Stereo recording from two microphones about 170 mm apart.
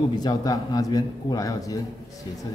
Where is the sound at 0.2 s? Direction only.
20° left (ahead or behind).